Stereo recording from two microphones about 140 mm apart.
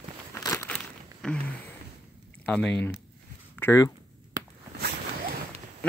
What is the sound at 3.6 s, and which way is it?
Speech, 20° left (ahead or behind).